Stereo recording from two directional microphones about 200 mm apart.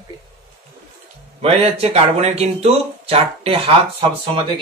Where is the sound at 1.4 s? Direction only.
30° right (ahead or behind).